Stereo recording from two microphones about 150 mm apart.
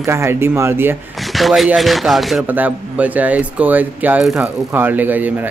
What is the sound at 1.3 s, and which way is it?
Speech, centre (ahead or behind).